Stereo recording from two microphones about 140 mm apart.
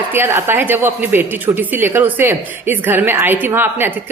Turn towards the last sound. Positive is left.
turn(degrees=-15)  # may be behind; listen again after turning